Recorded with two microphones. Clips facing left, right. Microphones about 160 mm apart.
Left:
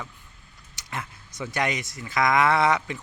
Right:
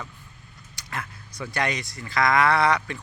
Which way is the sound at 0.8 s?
20° left (ahead or behind).